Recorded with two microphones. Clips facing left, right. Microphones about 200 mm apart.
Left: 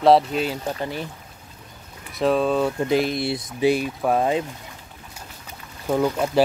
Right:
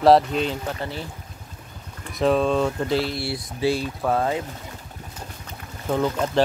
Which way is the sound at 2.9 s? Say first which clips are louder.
Left 3 dB; 15° left (ahead or behind).